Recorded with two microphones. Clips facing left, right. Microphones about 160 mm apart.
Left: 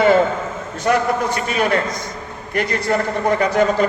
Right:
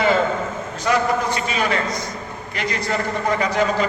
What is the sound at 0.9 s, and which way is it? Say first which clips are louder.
A man's voice: left 2 dB; 55° left (ahead or behind).